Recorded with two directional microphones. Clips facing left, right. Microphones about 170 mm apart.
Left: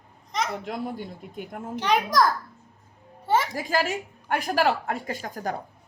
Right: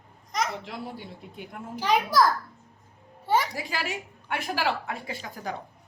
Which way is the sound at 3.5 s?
45° left (ahead or behind).